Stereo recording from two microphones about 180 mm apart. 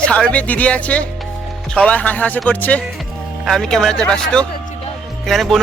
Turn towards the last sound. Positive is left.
turn(degrees=0)  # may be behind; listen again after turning